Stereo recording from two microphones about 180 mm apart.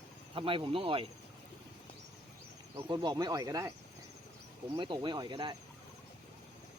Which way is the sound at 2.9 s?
25° right (ahead or behind).